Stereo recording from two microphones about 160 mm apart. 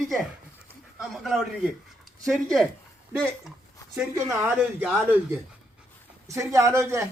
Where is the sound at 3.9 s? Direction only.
10° right (ahead or behind).